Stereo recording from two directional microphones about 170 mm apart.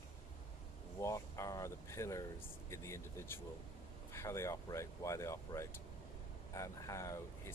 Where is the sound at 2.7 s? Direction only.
15° left (ahead or behind).